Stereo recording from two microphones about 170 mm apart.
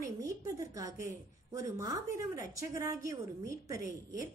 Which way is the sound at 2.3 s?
20° right (ahead or behind).